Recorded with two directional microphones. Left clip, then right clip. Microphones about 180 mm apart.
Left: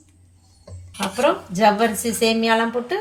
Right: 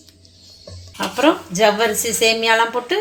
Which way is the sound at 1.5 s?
45° right (ahead or behind).